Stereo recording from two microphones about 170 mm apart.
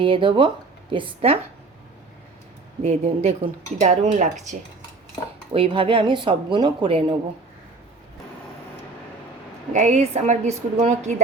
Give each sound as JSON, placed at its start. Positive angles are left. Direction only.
{"t": 0.0, "sound": "speech", "side_deg": -30}
{"t": 2.8, "sound": "speech", "side_deg": -35}
{"t": 5.5, "sound": "speech", "side_deg": -30}
{"t": 9.7, "sound": "a woman's voice", "side_deg": -40}